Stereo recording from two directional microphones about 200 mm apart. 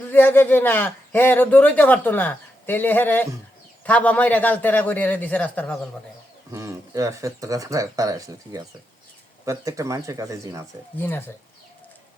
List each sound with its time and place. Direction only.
0.1 s speech: 10° left (ahead or behind)
6.5 s speech: 15° right (ahead or behind)
11.0 s speech: 10° left (ahead or behind)